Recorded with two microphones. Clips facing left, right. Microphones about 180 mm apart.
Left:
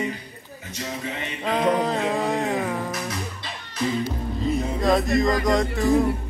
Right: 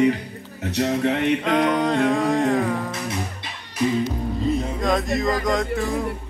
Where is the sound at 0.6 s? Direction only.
65° right (ahead or behind).